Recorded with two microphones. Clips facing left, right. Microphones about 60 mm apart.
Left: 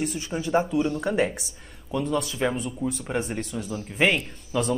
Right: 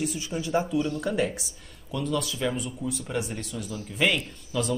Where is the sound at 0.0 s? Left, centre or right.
Left.